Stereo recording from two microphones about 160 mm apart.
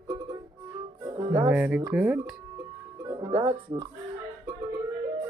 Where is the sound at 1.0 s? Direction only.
25° right (ahead or behind).